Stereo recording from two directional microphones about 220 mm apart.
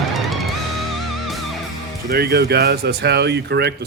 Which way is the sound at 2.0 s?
45° right (ahead or behind).